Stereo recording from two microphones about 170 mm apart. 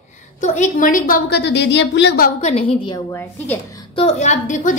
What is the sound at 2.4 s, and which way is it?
Speech, 35° left (ahead or behind).